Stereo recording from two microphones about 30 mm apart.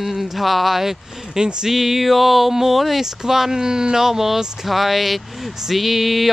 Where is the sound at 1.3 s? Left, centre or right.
Right.